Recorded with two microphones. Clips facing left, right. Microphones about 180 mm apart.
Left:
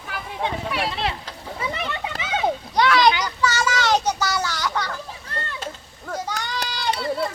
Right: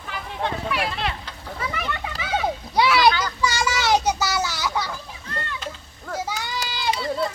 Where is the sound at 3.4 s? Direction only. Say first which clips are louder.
Left 2 dB; 10° right (ahead or behind).